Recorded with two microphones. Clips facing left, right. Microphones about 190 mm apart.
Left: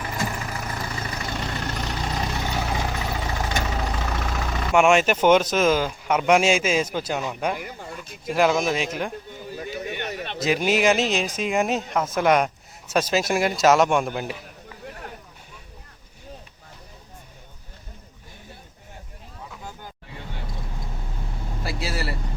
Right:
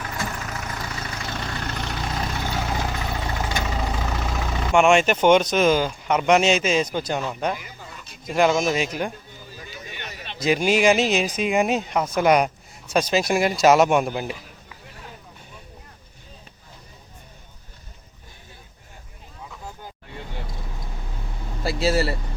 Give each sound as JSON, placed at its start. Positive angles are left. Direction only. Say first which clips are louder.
{"t": 0.3, "sound": "vehicle", "louder": "left 1 dB", "side_deg": 5}
{"t": 1.3, "sound": "vehicle", "louder": "even", "side_deg": 15}
{"t": 2.7, "sound": "vehicle", "louder": "even", "side_deg": 0}
{"t": 4.8, "sound": "speech", "louder": "right 1 dB", "side_deg": 5}
{"t": 7.5, "sound": "speech", "louder": "left 2 dB", "side_deg": 55}
{"t": 8.2, "sound": "speech", "louder": "right 1 dB", "side_deg": 5}
{"t": 9.3, "sound": "a sound", "louder": "left 8 dB", "side_deg": 60}
{"t": 10.4, "sound": "speech", "louder": "right 2 dB", "side_deg": 0}
{"t": 14.8, "sound": "a sound", "louder": "left 6 dB", "side_deg": 55}
{"t": 21.6, "sound": "vehicle", "louder": "right 8 dB", "side_deg": -25}